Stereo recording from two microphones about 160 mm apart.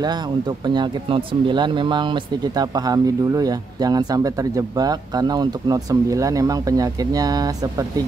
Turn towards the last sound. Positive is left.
turn(degrees=-25)  # may be behind; listen again after turning